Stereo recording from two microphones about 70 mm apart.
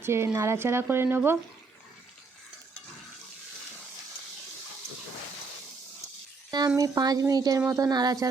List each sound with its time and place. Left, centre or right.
0.0 s speech: right
6.7 s speech: right